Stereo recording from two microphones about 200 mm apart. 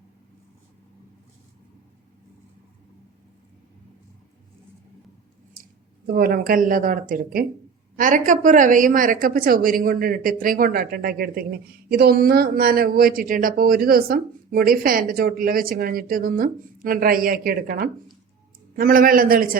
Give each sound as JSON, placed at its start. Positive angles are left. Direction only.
{"t": 6.1, "sound": "a woman's voice", "side_deg": -50}